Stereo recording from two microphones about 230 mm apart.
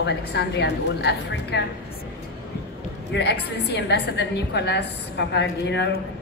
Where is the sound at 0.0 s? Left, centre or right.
Left.